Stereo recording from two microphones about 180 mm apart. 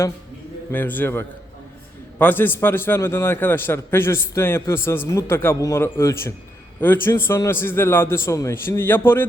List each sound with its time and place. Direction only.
0.7 s a man's voice: 10° left (ahead or behind)